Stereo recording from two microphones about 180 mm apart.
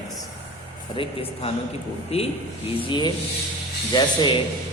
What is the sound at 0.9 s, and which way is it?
A man's voice, 30° left (ahead or behind).